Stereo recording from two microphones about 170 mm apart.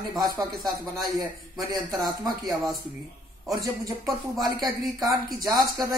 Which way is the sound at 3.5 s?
20° right (ahead or behind).